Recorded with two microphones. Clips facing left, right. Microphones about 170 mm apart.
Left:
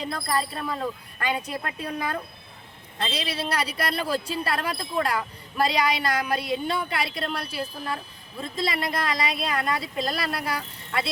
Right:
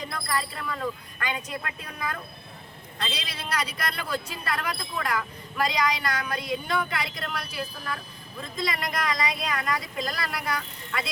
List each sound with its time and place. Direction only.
0.0 s speech: 30° left (ahead or behind)